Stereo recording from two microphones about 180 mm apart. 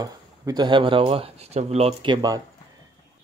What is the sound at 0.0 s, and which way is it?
Speech, 25° right (ahead or behind).